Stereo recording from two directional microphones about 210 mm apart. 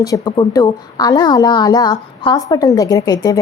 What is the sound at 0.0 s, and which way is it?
A woman's voice, 20° left (ahead or behind).